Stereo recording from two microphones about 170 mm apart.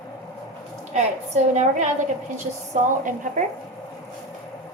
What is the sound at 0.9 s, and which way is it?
A woman's voice, 45° right (ahead or behind).